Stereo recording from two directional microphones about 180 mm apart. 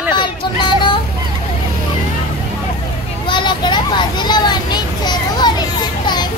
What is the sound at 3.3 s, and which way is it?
Children playing, 25° left (ahead or behind).